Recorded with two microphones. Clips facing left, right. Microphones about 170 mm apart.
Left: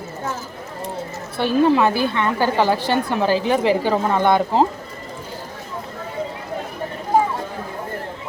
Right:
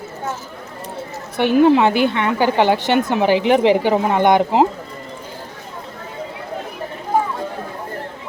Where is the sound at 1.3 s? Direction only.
20° right (ahead or behind).